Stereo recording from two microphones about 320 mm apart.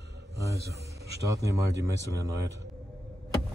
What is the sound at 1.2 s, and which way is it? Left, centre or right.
Speech, centre.